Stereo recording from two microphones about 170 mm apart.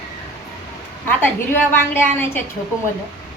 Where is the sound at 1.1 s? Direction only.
10° left (ahead or behind).